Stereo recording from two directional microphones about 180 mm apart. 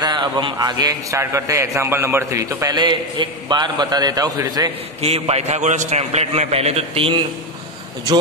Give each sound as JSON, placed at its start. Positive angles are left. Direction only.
{"t": 0.0, "sound": "a man's voice", "side_deg": -25}
{"t": 5.0, "sound": "a man's voice", "side_deg": -35}